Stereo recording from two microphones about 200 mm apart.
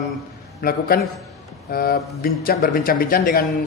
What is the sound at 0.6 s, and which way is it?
Speech, 50° left (ahead or behind).